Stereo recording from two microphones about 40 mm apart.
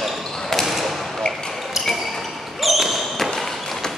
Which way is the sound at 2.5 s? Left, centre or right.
Centre.